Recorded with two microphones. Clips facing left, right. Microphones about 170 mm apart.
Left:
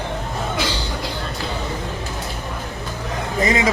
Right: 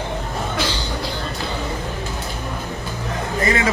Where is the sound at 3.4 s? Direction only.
20° left (ahead or behind).